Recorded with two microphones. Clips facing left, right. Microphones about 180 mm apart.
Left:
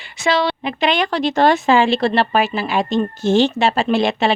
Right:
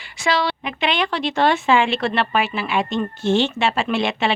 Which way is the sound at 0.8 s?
40° left (ahead or behind).